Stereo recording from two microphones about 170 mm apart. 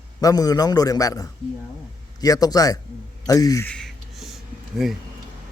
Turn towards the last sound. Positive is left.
turn(degrees=0)  # may be behind; listen again after turning